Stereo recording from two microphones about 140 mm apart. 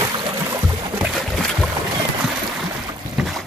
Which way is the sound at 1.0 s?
Centre (ahead or behind).